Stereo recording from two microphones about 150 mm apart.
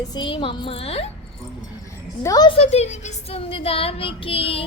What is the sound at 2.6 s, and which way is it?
Child singing, 45° left (ahead or behind).